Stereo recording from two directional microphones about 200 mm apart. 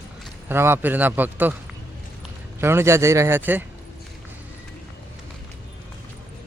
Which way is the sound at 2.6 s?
10° right (ahead or behind).